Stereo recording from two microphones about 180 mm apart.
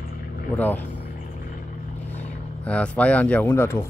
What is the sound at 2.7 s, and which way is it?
Speech, 5° left (ahead or behind).